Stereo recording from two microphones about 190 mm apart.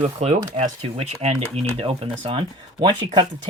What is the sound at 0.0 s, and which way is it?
Speech, 35° right (ahead or behind).